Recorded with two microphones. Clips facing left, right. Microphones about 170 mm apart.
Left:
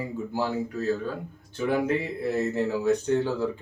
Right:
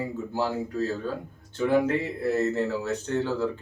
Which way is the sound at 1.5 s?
10° left (ahead or behind).